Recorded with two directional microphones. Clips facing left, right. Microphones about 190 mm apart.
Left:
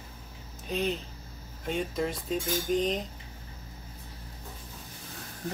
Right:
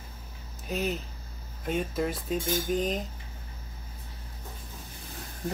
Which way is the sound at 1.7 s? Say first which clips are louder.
Right 1 dB; 5° right (ahead or behind).